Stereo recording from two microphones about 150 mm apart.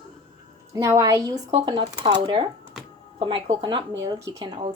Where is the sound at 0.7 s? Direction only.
20° right (ahead or behind).